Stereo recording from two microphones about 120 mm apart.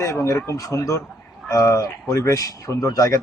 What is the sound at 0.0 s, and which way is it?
Speech, 25° left (ahead or behind).